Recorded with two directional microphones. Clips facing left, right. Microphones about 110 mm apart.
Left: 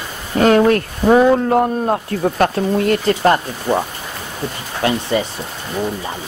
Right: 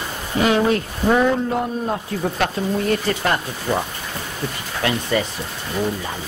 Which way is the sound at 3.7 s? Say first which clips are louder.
Left 4 dB; 25° left (ahead or behind).